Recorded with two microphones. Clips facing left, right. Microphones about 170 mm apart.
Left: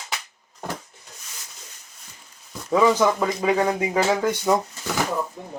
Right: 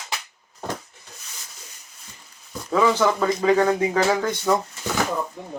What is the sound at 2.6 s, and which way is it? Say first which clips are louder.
Speech: left 1 dB; 15° left (ahead or behind).